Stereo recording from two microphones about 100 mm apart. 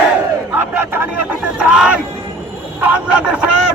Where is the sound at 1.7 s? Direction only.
5° right (ahead or behind).